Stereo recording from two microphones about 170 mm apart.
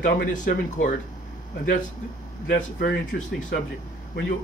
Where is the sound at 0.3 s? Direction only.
50° left (ahead or behind).